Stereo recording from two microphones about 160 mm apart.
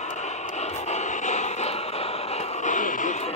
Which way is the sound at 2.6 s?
50° left (ahead or behind).